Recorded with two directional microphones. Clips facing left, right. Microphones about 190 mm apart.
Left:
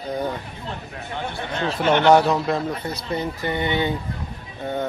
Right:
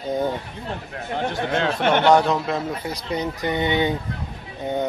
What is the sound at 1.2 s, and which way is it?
Speech, 45° right (ahead or behind).